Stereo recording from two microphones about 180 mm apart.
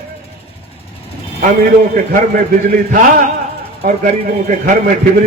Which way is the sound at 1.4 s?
50° right (ahead or behind).